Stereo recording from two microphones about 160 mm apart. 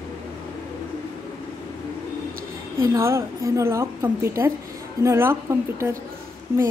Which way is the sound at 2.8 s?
20° right (ahead or behind).